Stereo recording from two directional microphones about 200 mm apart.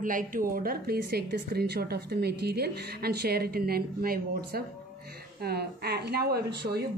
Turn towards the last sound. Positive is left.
turn(degrees=-50)  # may be behind; listen again after turning